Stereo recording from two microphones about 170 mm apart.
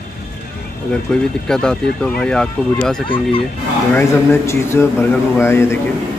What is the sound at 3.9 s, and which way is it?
Speech, 15° left (ahead or behind).